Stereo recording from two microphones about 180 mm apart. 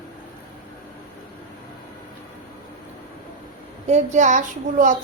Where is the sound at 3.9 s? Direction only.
40° right (ahead or behind).